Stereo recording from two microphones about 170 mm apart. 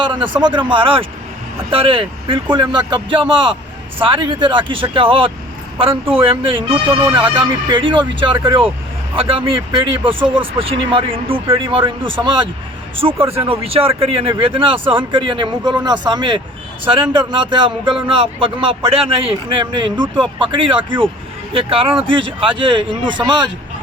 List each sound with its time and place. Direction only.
0.0 s a man's voice: 30° right (ahead or behind)